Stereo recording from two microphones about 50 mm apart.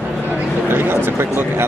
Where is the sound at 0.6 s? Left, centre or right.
Right.